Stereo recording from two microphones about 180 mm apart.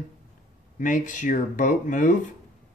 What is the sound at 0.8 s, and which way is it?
Speech, 45° left (ahead or behind).